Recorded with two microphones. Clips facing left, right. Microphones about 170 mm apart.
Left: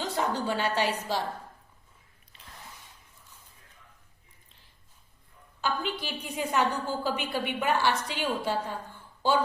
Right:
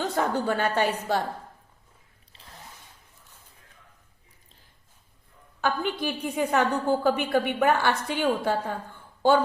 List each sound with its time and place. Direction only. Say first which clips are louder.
0.0 s a woman's voice: right 4 dB; 55° right (ahead or behind)
2.3 s a sound: right 1 dB; 30° right (ahead or behind)
5.5 s a woman's voice: right 4 dB; 55° right (ahead or behind)